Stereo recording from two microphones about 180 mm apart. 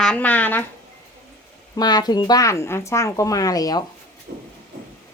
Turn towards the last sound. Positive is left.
turn(degrees=20)  # may be behind; listen again after turning